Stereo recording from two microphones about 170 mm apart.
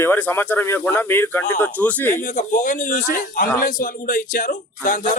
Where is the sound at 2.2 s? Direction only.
50° left (ahead or behind).